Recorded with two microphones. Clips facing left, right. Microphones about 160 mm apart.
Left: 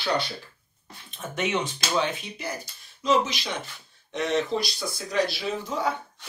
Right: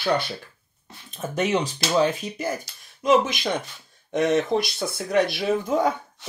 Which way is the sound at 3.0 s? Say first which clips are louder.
Right 4 dB; 50° right (ahead or behind).